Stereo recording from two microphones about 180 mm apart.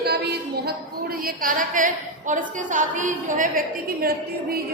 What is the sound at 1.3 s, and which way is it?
A woman's voice, 50° right (ahead or behind).